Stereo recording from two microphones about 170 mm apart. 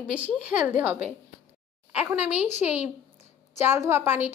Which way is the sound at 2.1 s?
10° right (ahead or behind).